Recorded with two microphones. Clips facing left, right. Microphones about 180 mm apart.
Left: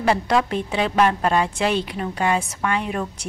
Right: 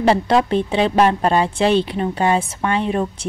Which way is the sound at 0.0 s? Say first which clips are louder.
Right 4 dB; 30° right (ahead or behind).